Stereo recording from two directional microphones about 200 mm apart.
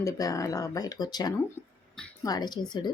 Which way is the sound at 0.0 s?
15° left (ahead or behind).